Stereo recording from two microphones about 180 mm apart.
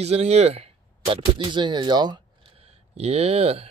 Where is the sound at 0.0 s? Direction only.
35° right (ahead or behind).